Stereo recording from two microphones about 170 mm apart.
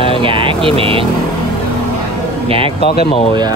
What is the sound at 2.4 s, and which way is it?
Speech, 35° right (ahead or behind).